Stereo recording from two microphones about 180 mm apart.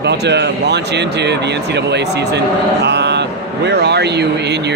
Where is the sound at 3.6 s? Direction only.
70° right (ahead or behind).